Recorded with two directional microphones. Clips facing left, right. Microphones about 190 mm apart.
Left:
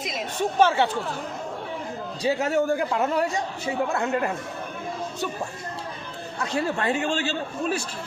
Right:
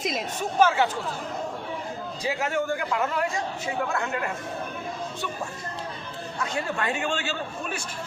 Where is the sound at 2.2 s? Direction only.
35° left (ahead or behind).